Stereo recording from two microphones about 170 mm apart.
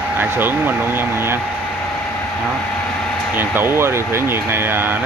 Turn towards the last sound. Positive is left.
turn(degrees=-10)  # may be behind; listen again after turning